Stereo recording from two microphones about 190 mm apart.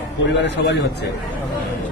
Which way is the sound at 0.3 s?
65° left (ahead or behind).